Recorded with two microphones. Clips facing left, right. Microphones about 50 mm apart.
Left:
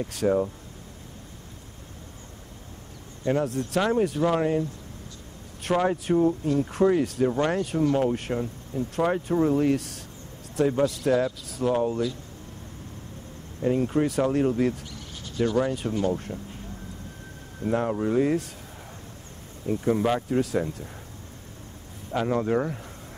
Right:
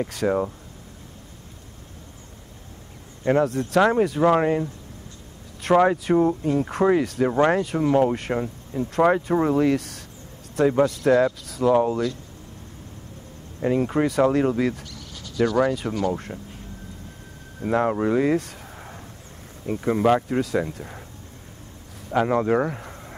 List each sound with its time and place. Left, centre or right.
0.0 s speech: right
3.3 s speech: right
7.3 s speech: right
8.0 s speech: right
8.4 s speech: right
9.5 s speech: right
11.7 s speech: right
13.7 s speech: right
17.6 s speech: right
19.6 s speech: right
20.2 s speech: right
22.1 s speech: right